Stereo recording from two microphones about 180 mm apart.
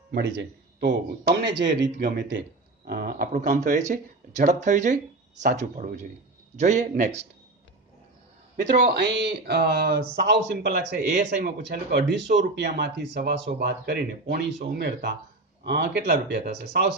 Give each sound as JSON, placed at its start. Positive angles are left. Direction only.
{"t": 0.1, "sound": "speech", "side_deg": -65}
{"t": 2.8, "sound": "a man's voice", "side_deg": -55}
{"t": 8.8, "sound": "speech", "side_deg": -70}